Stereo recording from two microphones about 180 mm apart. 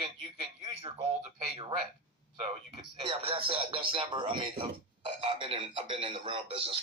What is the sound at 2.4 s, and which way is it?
Speech, 30° right (ahead or behind).